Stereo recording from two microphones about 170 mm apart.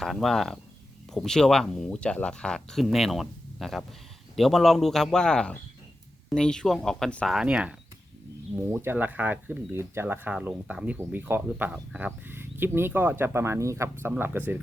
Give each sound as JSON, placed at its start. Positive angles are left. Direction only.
{"t": 0.0, "sound": "speech", "side_deg": 0}